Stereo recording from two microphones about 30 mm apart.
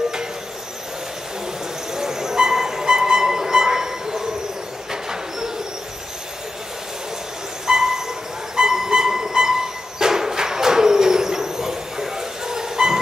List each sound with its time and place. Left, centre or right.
2.0 s music: centre
7.6 s a sound: centre
8.5 s music: centre